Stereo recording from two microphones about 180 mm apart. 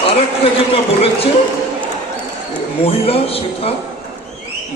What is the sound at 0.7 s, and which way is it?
Speech, 30° left (ahead or behind).